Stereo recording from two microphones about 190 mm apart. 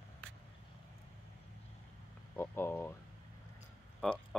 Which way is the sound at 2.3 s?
10° left (ahead or behind).